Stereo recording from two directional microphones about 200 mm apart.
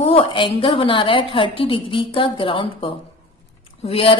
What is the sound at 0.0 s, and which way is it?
Speech, 25° left (ahead or behind).